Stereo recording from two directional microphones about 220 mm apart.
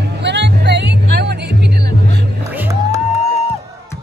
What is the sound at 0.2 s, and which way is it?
Music, 50° right (ahead or behind).